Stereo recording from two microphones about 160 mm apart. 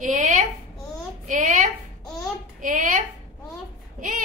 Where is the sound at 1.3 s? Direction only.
50° right (ahead or behind).